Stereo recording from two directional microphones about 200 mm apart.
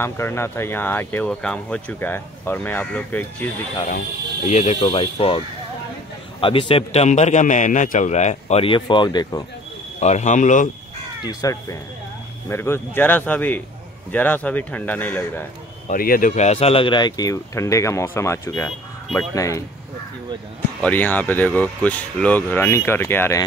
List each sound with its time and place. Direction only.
0.0 s speech: 10° left (ahead or behind)
4.5 s speech: 35° left (ahead or behind)
6.4 s a man's voice: 25° left (ahead or behind)
9.9 s a man's voice: 35° left (ahead or behind)
11.4 s speech: 20° left (ahead or behind)
15.9 s speech: 45° left (ahead or behind); by 19.6 s 15° left (ahead or behind)
20.8 s speech: 10° left (ahead or behind)